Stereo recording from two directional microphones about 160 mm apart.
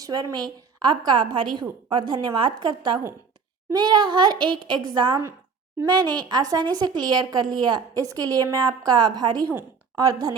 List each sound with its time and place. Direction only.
0.0 s a woman's voice: 25° right (ahead or behind)